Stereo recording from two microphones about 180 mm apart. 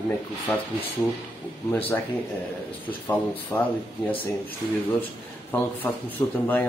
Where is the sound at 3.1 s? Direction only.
10° left (ahead or behind).